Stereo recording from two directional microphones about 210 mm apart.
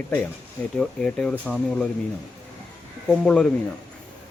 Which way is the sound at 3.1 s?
5° left (ahead or behind).